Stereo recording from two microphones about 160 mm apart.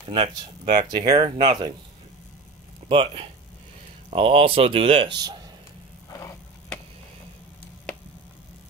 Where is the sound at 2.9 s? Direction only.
35° right (ahead or behind).